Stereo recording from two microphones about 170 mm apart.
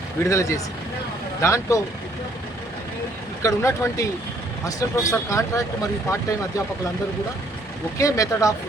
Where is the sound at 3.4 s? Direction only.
20° left (ahead or behind).